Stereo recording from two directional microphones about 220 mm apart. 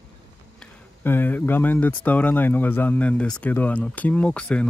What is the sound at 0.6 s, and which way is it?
Speech, 10° left (ahead or behind).